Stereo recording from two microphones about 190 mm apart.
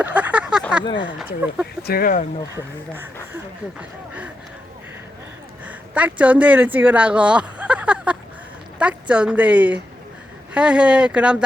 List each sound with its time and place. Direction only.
0.0 s a sound: 5° right (ahead or behind)
1.0 s speech: 5° right (ahead or behind)
1.9 s speech: 50° left (ahead or behind)
2.6 s speech: 10° right (ahead or behind)
5.6 s speech: 5° right (ahead or behind)